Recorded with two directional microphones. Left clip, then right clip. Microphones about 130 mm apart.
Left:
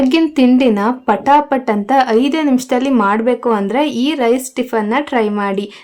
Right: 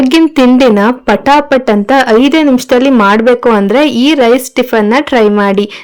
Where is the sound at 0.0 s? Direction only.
40° right (ahead or behind).